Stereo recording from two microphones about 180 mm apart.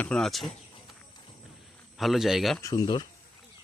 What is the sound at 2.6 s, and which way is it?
Speech, 20° left (ahead or behind).